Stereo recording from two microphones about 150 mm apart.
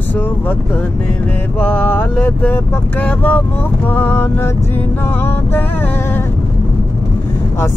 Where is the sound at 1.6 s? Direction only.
10° left (ahead or behind).